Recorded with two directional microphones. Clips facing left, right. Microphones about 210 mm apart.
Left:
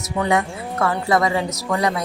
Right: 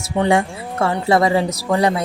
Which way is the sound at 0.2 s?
30° right (ahead or behind).